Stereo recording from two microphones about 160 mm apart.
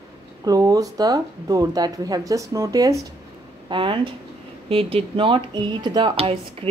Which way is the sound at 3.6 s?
30° right (ahead or behind).